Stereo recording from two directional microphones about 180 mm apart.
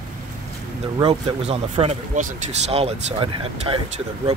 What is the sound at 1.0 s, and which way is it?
Speech, 35° right (ahead or behind).